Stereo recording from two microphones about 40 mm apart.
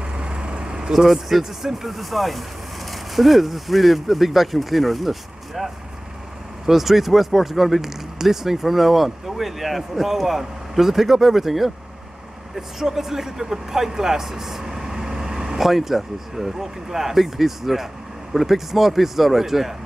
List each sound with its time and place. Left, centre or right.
0.2 s vehicle: right
0.9 s speech: centre